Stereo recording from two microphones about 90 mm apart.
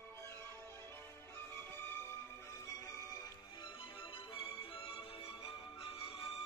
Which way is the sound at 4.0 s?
80° left.